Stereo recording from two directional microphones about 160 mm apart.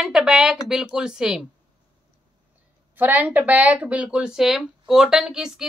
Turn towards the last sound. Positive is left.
turn(degrees=-5)  # may be behind; listen again after turning